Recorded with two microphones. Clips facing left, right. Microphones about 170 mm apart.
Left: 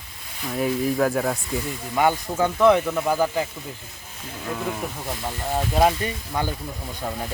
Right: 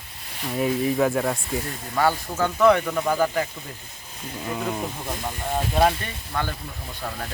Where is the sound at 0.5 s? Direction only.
Centre (ahead or behind).